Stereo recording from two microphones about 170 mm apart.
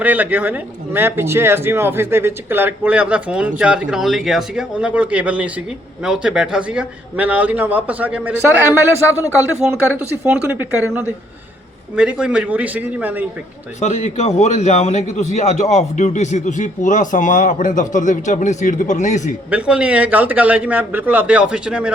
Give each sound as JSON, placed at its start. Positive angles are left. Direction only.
{"t": 0.0, "sound": "speech", "side_deg": -10}
{"t": 11.9, "sound": "speech", "side_deg": -5}
{"t": 13.7, "sound": "a man's voice", "side_deg": 40}
{"t": 19.5, "sound": "speech", "side_deg": -5}